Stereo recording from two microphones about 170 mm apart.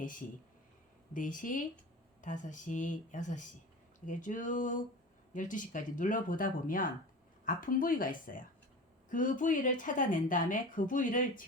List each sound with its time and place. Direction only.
0.0 s a woman's voice: 50° left (ahead or behind)